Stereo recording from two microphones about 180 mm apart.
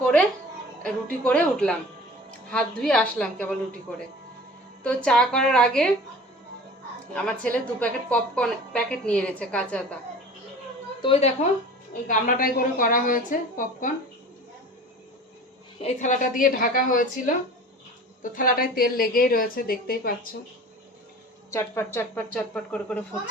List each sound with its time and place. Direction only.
0.8 s a woman's voice: 5° left (ahead or behind)
5.0 s a woman's voice: 5° left (ahead or behind)
7.1 s a woman's voice: 5° left (ahead or behind)
11.0 s a woman's voice: 35° left (ahead or behind)
12.0 s a woman's voice: 50° left (ahead or behind)
15.8 s a woman's voice: 45° left (ahead or behind)
21.5 s speech: 15° left (ahead or behind)